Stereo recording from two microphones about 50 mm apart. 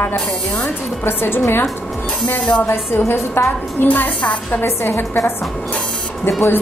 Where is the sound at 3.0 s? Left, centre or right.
Left.